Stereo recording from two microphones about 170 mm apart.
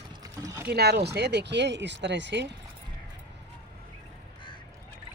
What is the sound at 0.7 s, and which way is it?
Speech, 75° right (ahead or behind).